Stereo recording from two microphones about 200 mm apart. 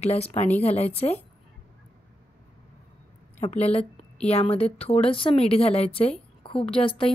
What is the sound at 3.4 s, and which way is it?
A woman's voice, 35° left (ahead or behind).